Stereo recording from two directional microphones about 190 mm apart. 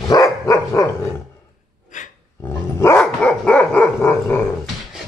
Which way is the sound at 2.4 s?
15° left (ahead or behind).